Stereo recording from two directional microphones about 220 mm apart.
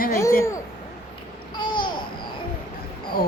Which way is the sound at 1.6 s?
20° left (ahead or behind).